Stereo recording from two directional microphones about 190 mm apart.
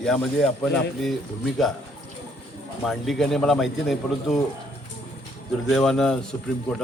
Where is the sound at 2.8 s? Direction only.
Centre (ahead or behind).